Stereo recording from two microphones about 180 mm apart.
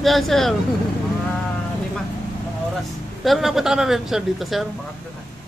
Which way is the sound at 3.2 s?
Centre (ahead or behind).